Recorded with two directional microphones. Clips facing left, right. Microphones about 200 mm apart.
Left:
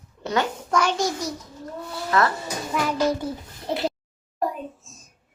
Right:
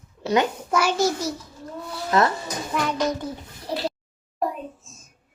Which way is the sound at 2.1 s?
20° right (ahead or behind).